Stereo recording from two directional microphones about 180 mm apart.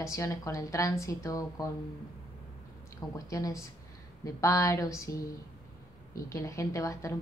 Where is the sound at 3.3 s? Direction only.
20° left (ahead or behind).